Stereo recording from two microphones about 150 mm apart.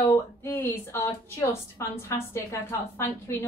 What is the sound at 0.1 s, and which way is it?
A woman's voice, 15° left (ahead or behind).